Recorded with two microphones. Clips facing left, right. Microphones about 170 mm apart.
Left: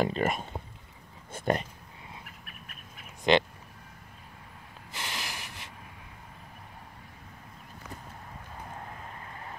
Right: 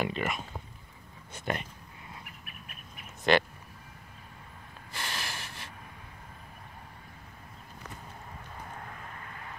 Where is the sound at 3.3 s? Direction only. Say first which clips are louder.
Left 1 dB; 20° left (ahead or behind).